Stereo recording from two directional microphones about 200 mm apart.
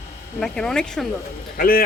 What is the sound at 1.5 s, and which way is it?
Speech, 45° left (ahead or behind).